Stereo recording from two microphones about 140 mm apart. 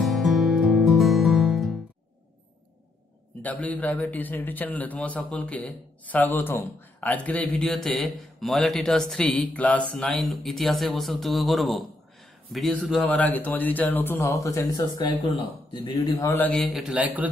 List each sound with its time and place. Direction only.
0.0 s music: centre (ahead or behind)
3.4 s a man's voice: 10° left (ahead or behind); by 16.3 s 25° left (ahead or behind)
16.5 s a man's voice: centre (ahead or behind)